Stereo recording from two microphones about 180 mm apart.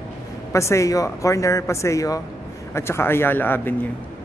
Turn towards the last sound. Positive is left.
turn(degrees=10)  # may be behind; listen again after turning